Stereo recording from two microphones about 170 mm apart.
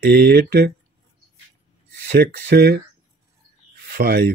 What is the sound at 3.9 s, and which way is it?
Speech, 60° right (ahead or behind).